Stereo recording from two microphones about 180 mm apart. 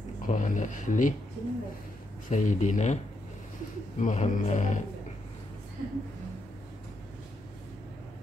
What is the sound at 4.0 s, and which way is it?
Speech, 40° left (ahead or behind).